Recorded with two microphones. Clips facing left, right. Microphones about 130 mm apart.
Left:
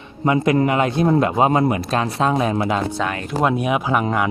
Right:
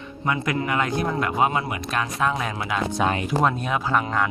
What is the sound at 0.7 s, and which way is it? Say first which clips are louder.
Speech: left 7 dB; 25° left (ahead or behind).